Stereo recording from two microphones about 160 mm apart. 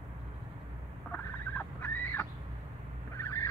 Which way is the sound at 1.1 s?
10° left (ahead or behind).